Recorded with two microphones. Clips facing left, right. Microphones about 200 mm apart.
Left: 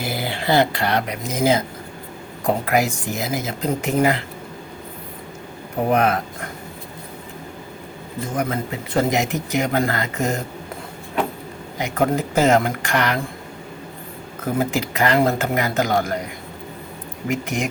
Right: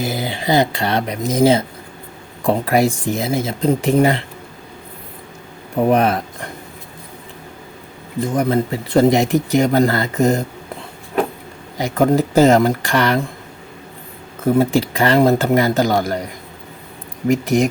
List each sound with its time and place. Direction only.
0.0 s speech: 20° right (ahead or behind)
2.6 s speech: 30° right (ahead or behind)
5.9 s speech: 30° right (ahead or behind)
8.4 s speech: 35° right (ahead or behind)
11.8 s speech: 35° right (ahead or behind)
14.4 s speech: 30° right (ahead or behind)
17.2 s speech: 35° right (ahead or behind)